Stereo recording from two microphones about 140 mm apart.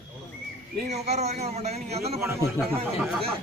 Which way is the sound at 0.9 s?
50° right (ahead or behind).